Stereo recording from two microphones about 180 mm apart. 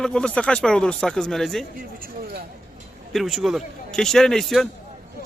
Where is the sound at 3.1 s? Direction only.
Centre (ahead or behind).